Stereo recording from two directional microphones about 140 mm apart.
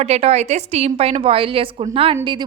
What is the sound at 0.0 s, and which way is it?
A woman's voice, 50° right (ahead or behind).